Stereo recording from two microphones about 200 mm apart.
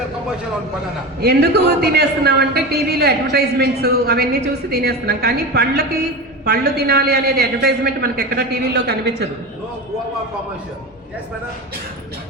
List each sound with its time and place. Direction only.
1.2 s a man's voice: 55° right (ahead or behind)